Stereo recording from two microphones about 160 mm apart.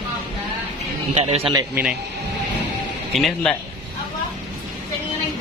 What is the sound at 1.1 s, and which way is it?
Speech, 40° right (ahead or behind).